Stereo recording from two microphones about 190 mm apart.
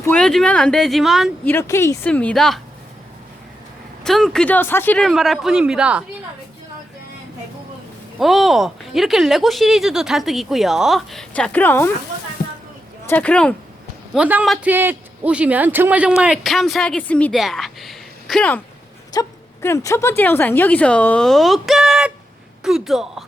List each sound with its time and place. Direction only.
0.0 s a man's voice: 5° left (ahead or behind)
1.5 s a woman's voice: 15° left (ahead or behind)
4.0 s a man's voice: centre (ahead or behind)
8.2 s a man's voice: centre (ahead or behind)
12.4 s a sound: 50° left (ahead or behind)
13.1 s a woman's voice: 10° left (ahead or behind)
14.1 s a man's voice: 5° right (ahead or behind)
19.1 s a woman's voice: 15° left (ahead or behind); by 23.2 s centre (ahead or behind)